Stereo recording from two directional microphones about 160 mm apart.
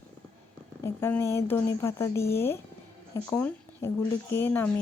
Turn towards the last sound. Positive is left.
turn(degrees=15)  # may be behind; listen again after turning